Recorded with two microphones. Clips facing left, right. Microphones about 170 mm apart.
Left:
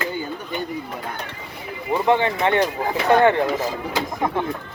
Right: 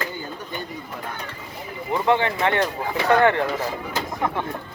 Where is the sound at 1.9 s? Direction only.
20° left (ahead or behind).